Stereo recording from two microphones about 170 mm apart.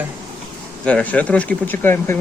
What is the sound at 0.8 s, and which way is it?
Speech, 10° left (ahead or behind).